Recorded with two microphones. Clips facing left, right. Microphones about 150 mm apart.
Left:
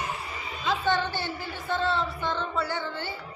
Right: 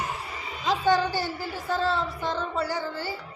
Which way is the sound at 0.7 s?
40° right (ahead or behind).